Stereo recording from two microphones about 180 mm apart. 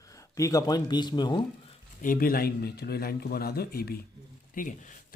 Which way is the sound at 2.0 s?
50° left (ahead or behind).